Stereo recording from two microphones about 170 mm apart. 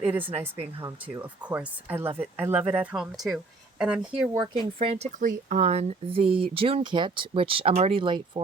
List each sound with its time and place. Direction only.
0.0 s speech: 10° right (ahead or behind)
4.8 s speech: 35° right (ahead or behind)